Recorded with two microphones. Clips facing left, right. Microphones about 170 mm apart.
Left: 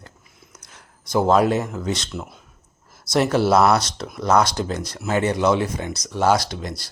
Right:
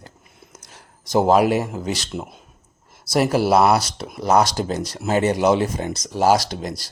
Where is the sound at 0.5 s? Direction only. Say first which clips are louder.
Right 2 dB; 45° right (ahead or behind).